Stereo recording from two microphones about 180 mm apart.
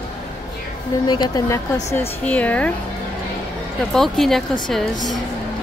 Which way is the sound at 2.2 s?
10° left (ahead or behind).